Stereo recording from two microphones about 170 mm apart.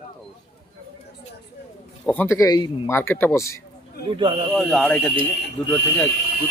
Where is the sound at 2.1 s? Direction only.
15° left (ahead or behind).